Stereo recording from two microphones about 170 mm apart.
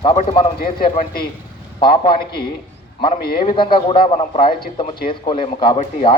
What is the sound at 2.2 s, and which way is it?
Speech, 65° left (ahead or behind).